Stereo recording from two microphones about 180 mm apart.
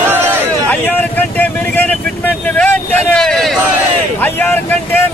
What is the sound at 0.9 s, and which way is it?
Vehicle, 10° left (ahead or behind).